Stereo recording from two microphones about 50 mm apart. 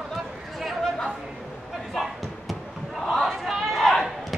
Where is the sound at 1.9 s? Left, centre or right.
Centre.